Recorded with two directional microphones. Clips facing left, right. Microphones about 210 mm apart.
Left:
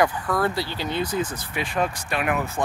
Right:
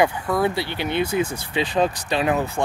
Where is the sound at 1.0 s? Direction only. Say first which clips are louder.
Right 4 dB; 10° right (ahead or behind).